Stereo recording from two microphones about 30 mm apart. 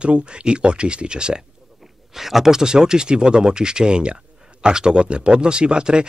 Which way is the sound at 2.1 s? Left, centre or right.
Centre.